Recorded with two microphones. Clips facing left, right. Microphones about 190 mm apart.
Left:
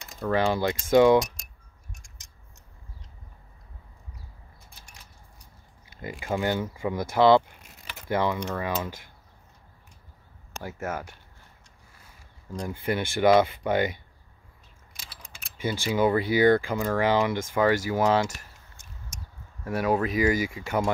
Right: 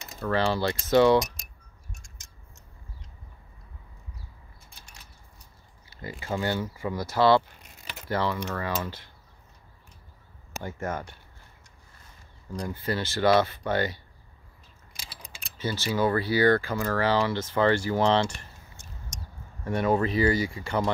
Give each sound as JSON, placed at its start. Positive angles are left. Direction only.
{"t": 0.2, "sound": "speech", "side_deg": 15}
{"t": 2.0, "sound": "a sound", "side_deg": 15}
{"t": 5.9, "sound": "speech", "side_deg": 20}
{"t": 10.6, "sound": "speech", "side_deg": 5}
{"t": 15.4, "sound": "keys jangling", "side_deg": 15}
{"t": 15.9, "sound": "speech", "side_deg": 15}